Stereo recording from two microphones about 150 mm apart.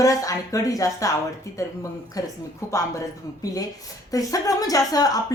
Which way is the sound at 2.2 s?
25° left (ahead or behind).